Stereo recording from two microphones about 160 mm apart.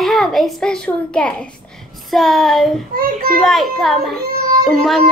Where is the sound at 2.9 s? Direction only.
65° right (ahead or behind).